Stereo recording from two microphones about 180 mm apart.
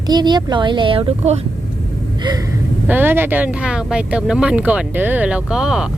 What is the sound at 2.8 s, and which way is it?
Speech, 10° right (ahead or behind).